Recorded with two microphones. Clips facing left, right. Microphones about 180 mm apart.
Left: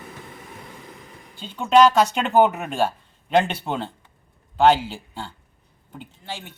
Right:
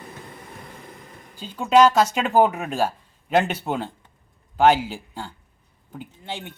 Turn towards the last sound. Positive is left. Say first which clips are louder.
# right 2 dB
turn(degrees=-20)  # may be behind; listen again after turning